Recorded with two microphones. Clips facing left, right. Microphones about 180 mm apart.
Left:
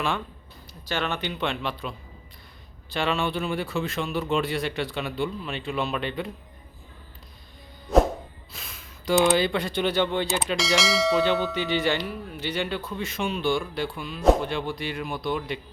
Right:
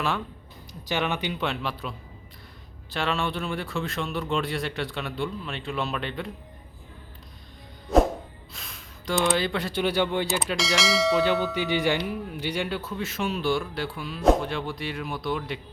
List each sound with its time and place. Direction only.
0.7 s speech: 15° right (ahead or behind)
2.9 s speech: centre (ahead or behind)
8.5 s speech: centre (ahead or behind)
11.5 s speech: 10° right (ahead or behind)